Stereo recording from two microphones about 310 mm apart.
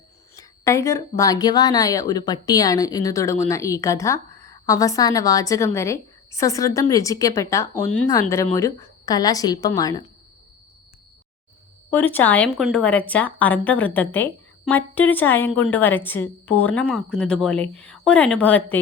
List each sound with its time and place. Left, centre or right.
0.3 s speech: centre
11.9 s speech: centre